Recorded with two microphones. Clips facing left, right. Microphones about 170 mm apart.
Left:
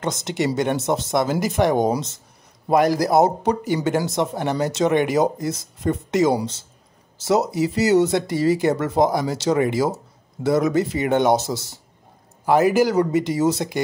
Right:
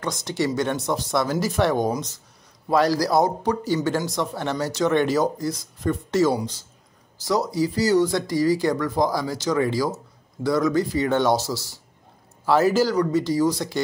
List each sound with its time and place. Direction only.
0.0 s speech: 20° left (ahead or behind)